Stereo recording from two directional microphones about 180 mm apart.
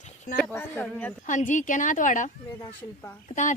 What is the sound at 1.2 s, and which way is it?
A woman's voice, 45° left (ahead or behind).